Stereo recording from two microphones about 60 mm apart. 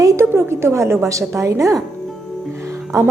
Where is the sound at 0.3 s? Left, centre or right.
Right.